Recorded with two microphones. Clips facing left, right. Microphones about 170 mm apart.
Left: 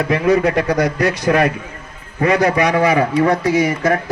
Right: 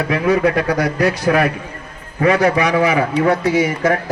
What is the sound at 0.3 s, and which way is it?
Speech, 40° left (ahead or behind).